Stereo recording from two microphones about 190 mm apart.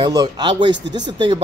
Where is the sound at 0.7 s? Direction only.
65° right (ahead or behind).